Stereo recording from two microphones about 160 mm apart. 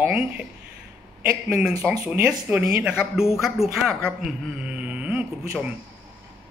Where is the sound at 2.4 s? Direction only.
10° right (ahead or behind).